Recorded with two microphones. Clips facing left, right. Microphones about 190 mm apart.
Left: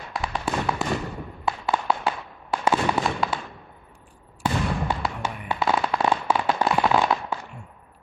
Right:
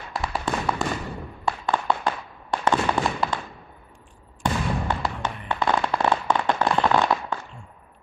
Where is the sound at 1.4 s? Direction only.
5° left (ahead or behind).